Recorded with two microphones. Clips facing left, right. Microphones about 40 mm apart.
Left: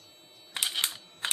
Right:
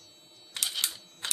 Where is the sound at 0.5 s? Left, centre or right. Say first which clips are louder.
Left 2 dB; left.